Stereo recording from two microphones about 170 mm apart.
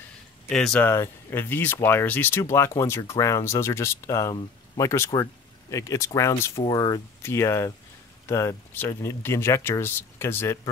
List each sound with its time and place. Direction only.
0.5 s speech: 5° left (ahead or behind)
0.8 s speech: 15° left (ahead or behind)